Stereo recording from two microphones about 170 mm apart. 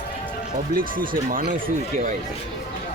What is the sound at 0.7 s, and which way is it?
Speech, 55° right (ahead or behind).